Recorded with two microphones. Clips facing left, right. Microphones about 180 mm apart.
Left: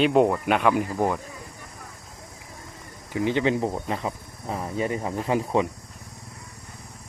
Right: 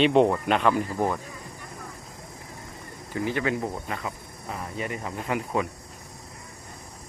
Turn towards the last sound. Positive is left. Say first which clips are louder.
# left 4 dB
turn(degrees=30)  # may be behind; listen again after turning